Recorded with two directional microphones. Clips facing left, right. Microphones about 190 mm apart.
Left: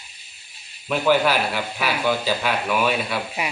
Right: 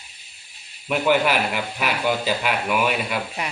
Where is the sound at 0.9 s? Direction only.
15° right (ahead or behind).